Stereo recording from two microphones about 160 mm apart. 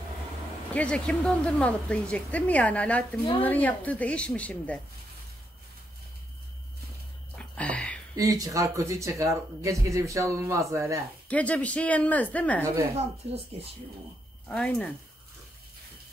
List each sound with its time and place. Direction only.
0.7 s speech: 5° left (ahead or behind)
7.3 s whispering: 10° left (ahead or behind)
8.2 s speech: 20° right (ahead or behind)
11.2 s speech: 10° left (ahead or behind)
14.5 s speech: 5° left (ahead or behind)